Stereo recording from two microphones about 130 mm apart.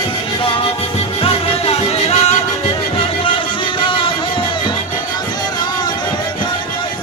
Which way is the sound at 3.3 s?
40° left (ahead or behind).